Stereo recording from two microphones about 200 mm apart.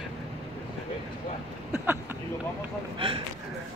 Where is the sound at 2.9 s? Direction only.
25° right (ahead or behind).